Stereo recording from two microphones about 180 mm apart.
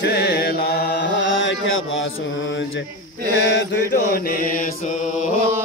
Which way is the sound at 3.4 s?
90° left.